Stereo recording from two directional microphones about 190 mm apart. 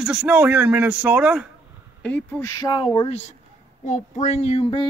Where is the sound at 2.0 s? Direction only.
10° left (ahead or behind).